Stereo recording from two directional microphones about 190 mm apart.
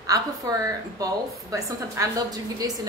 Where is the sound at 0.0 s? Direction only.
20° right (ahead or behind).